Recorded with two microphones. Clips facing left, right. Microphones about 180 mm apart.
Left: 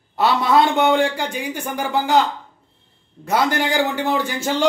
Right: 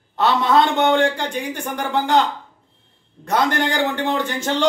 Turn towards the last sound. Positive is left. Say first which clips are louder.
# even
turn(degrees=10)  # may be behind; listen again after turning